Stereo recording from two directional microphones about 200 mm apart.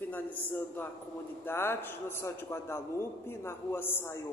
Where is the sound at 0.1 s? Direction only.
10° left (ahead or behind).